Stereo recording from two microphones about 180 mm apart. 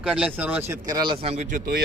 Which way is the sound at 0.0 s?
5° right (ahead or behind).